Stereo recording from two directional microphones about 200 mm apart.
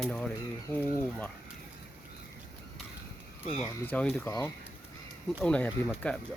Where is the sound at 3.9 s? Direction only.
10° left (ahead or behind).